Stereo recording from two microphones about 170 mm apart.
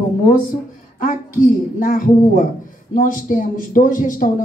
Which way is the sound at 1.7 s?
50° left (ahead or behind).